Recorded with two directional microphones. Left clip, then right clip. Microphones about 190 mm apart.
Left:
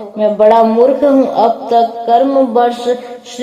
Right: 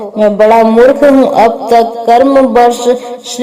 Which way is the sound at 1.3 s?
35° right (ahead or behind).